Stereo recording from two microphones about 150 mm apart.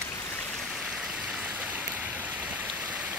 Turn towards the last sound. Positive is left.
turn(degrees=-10)  # may be behind; listen again after turning